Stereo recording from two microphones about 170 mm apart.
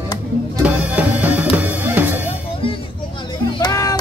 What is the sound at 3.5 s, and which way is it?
Music, 20° left (ahead or behind).